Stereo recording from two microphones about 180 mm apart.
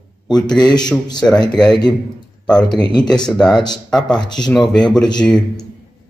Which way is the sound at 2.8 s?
25° left (ahead or behind).